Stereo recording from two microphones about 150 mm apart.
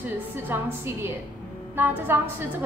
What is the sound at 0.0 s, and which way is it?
A woman's voice, 15° right (ahead or behind).